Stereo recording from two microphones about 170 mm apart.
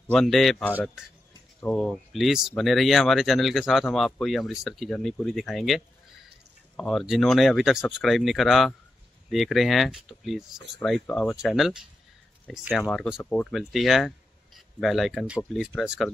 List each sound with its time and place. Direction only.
0.1 s speech: centre (ahead or behind)
6.8 s speech: centre (ahead or behind)